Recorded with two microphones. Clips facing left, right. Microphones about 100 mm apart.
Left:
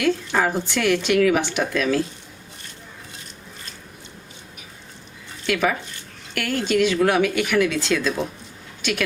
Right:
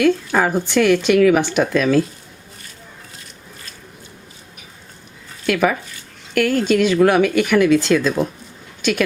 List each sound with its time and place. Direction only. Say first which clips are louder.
0.0 s speech: right 5 dB; 50° right (ahead or behind)
5.5 s speech: right 4 dB; 50° right (ahead or behind)